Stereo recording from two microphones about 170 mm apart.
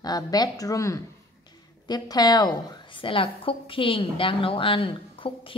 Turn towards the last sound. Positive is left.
turn(degrees=30)  # may be behind; listen again after turning